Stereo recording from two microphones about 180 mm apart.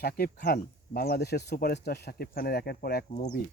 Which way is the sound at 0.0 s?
60° left (ahead or behind).